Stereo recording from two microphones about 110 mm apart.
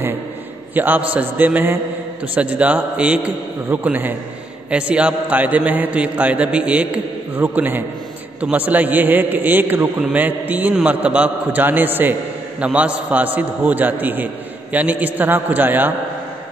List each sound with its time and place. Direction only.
0.7 s a man's voice: 15° right (ahead or behind)